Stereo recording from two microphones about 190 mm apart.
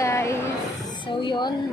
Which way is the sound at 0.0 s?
15° left (ahead or behind).